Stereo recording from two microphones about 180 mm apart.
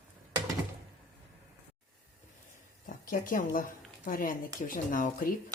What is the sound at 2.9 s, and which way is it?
Speech, 50° left (ahead or behind).